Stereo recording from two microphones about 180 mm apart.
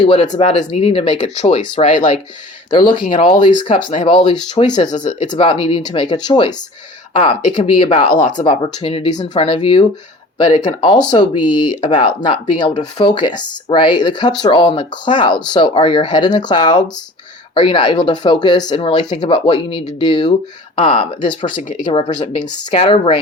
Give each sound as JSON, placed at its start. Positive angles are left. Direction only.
{"t": 0.0, "sound": "speech", "side_deg": 35}